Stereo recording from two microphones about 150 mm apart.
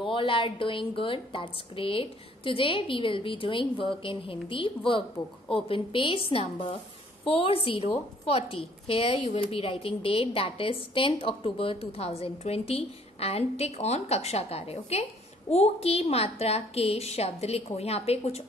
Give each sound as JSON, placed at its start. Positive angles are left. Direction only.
{"t": 0.1, "sound": "a woman's voice", "side_deg": 35}